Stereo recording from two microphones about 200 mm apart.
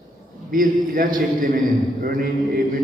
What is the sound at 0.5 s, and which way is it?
A man's voice, 45° right (ahead or behind).